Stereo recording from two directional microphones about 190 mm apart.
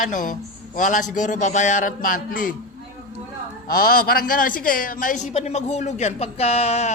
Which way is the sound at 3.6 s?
50° left (ahead or behind).